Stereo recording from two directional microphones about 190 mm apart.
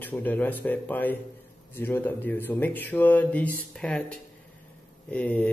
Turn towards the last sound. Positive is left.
turn(degrees=10)  # may be behind; listen again after turning